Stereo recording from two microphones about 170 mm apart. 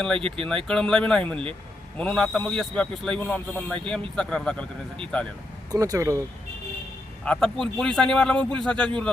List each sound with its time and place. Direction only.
0.2 s speech: 30° right (ahead or behind)
0.4 s a man's voice: 5° left (ahead or behind)
5.7 s speech: 20° right (ahead or behind)
7.3 s a man's voice: 5° left (ahead or behind)